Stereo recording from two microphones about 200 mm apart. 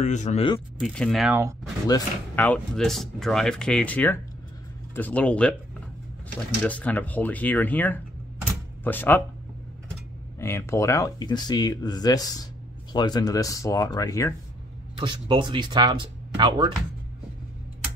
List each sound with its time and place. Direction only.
0.0 s speech: 35° left (ahead or behind)
0.7 s speech: centre (ahead or behind)
1.9 s speech: 20° left (ahead or behind)
2.4 s speech: 5° left (ahead or behind)
6.6 s speech: 5° left (ahead or behind)
10.4 s speech: 15° left (ahead or behind)
15.0 s speech: 25° right (ahead or behind)